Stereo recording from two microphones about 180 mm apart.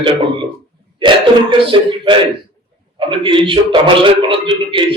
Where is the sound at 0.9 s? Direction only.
25° right (ahead or behind).